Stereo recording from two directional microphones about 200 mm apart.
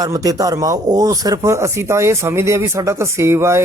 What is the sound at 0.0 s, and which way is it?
Speech, 15° right (ahead or behind).